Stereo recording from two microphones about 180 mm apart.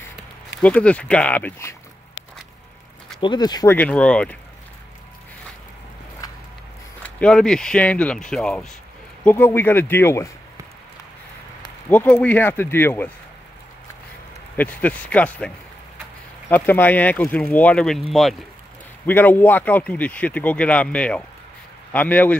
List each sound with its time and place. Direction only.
0.6 s a man's voice: 10° left (ahead or behind)
3.2 s speech: 25° left (ahead or behind)
3.7 s a man's voice: 10° left (ahead or behind)
7.0 s a man's voice: 5° left (ahead or behind)
11.9 s a man's voice: 10° left (ahead or behind)
14.6 s a man's voice: 10° left (ahead or behind)